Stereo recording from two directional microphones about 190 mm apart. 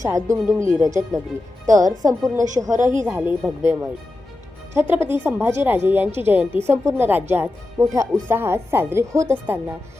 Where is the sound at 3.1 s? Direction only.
10° right (ahead or behind).